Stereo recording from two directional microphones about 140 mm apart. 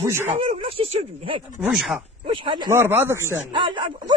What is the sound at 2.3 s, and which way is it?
Speech, 35° right (ahead or behind).